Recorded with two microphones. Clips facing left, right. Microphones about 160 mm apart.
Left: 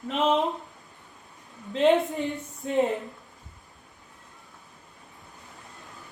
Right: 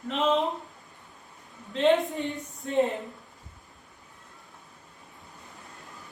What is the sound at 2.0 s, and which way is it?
Speech, centre (ahead or behind).